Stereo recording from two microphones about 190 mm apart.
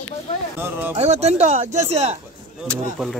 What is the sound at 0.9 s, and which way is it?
Speech, 35° right (ahead or behind).